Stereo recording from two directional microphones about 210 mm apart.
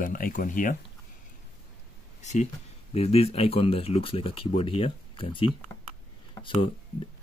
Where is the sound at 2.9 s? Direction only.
30° left (ahead or behind).